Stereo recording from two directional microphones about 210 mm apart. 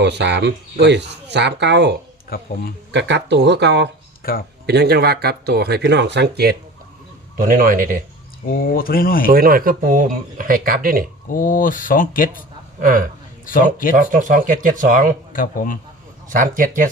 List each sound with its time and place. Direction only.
0.0 s speech: 55° right (ahead or behind)
4.2 s speech: 45° left (ahead or behind)
4.6 s speech: 50° right (ahead or behind)
8.4 s speech: 45° left (ahead or behind)
9.3 s speech: 45° right (ahead or behind)
11.3 s speech: 40° left (ahead or behind)
12.8 s speech: 40° right (ahead or behind)
15.3 s speech: 40° left (ahead or behind)
16.3 s speech: 40° right (ahead or behind)